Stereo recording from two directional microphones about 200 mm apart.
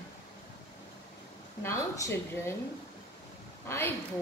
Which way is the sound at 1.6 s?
15° left (ahead or behind).